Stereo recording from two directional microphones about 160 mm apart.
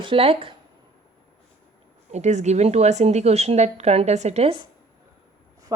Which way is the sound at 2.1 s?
45° right (ahead or behind).